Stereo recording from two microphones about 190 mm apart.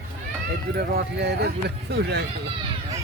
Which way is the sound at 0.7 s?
60° right (ahead or behind).